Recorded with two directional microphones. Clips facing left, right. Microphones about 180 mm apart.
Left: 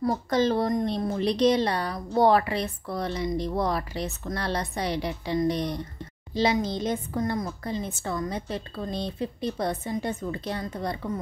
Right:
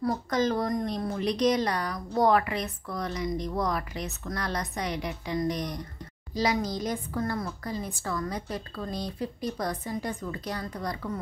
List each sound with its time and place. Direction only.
0.0 s a woman's voice: 30° left (ahead or behind)